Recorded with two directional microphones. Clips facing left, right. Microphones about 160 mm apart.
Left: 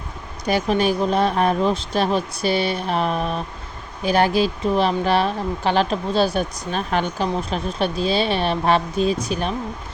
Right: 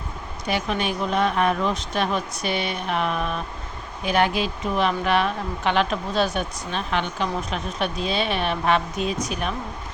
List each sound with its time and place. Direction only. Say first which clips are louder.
0.4 s speech: left 6 dB; 40° left (ahead or behind)